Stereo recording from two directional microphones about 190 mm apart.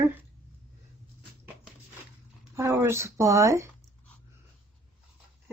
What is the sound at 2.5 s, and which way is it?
Speech, 15° right (ahead or behind).